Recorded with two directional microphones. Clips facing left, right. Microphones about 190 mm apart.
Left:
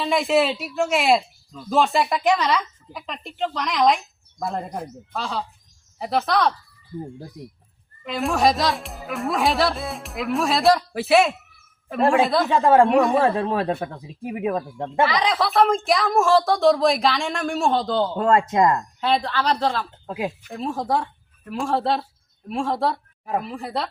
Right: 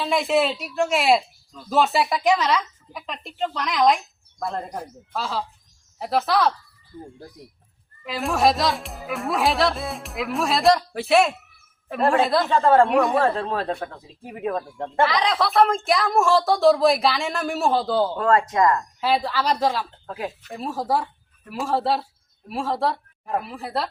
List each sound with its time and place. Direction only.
0.0 s speech: centre (ahead or behind)
8.0 s a woman's voice: centre (ahead or behind)
12.5 s speech: 10° left (ahead or behind)
12.9 s speech: centre (ahead or behind)
13.2 s speech: 10° left (ahead or behind); by 18.1 s 5° right (ahead or behind)
18.2 s speech: 25° left (ahead or behind)
18.9 s speech: 5° right (ahead or behind)
20.1 s speech: 10° left (ahead or behind)
20.5 s speech: 5° right (ahead or behind)